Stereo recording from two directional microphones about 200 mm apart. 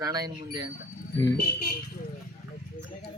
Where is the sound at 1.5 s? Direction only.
50° left (ahead or behind).